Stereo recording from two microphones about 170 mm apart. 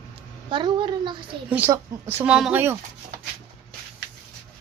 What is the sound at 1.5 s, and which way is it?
A woman's voice, 10° right (ahead or behind).